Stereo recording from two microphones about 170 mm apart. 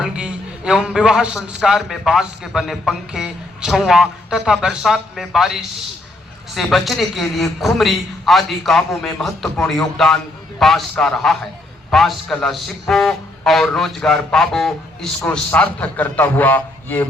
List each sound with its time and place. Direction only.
0.0 s a man's voice: 5° right (ahead or behind); by 17.1 s 10° left (ahead or behind)